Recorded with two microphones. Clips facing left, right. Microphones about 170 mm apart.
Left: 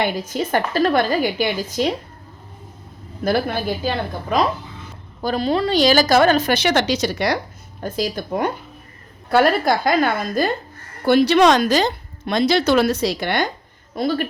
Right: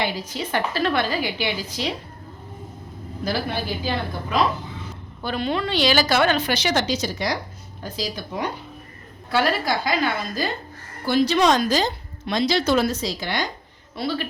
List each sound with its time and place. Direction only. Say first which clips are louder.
0.0 s a woman's voice: left 5 dB; 45° left (ahead or behind)
3.2 s a woman's voice: left 6 dB; 55° left (ahead or behind)
5.2 s a woman's voice: left 5 dB; 40° left (ahead or behind); by 7.3 s 70° left (ahead or behind)
7.8 s a woman's voice: left 6 dB; 50° left (ahead or behind)
11.0 s speech: left 5 dB; 65° left (ahead or behind)
13.9 s a woman's voice: left 5 dB; 45° left (ahead or behind)